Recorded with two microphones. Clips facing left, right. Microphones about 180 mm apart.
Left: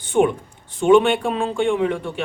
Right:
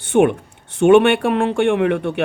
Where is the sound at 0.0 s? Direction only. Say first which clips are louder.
Right 3 dB; 70° right (ahead or behind).